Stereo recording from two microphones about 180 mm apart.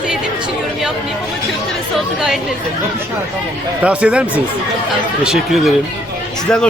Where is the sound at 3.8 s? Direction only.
5° right (ahead or behind).